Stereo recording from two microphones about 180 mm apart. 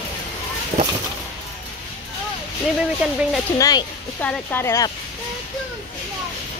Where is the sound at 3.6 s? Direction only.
20° left (ahead or behind).